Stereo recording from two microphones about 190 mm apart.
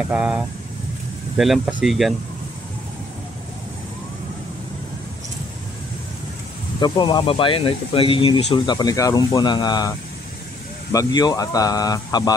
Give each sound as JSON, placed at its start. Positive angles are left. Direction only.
{"t": 0.1, "sound": "speech", "side_deg": -5}
{"t": 6.8, "sound": "speech", "side_deg": 25}